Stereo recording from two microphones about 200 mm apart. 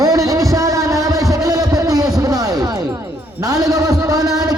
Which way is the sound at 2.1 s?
20° right (ahead or behind).